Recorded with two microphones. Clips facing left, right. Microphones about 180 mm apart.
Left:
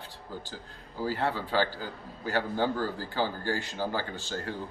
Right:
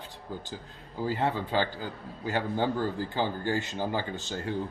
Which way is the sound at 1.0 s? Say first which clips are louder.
Right 1 dB; 20° right (ahead or behind).